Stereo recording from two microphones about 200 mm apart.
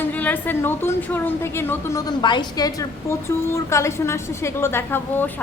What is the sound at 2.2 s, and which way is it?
A woman's voice, 20° left (ahead or behind).